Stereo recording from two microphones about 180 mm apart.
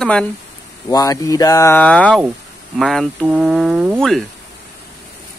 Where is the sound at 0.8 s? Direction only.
20° left (ahead or behind); by 3.9 s centre (ahead or behind).